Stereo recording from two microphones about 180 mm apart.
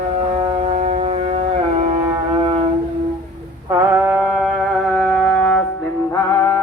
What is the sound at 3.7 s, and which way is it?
Mantra, 20° right (ahead or behind).